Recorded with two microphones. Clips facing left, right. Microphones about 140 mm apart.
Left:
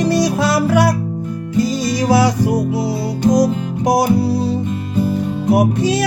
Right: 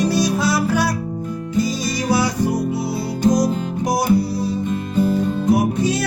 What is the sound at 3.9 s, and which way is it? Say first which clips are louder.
Music: left 3 dB; 70° left (ahead or behind).